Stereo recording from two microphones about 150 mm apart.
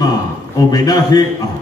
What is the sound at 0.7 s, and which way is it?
Speech, 25° left (ahead or behind).